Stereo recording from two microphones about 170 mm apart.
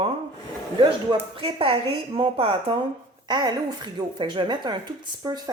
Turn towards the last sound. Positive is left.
turn(degrees=-20)  # may be behind; listen again after turning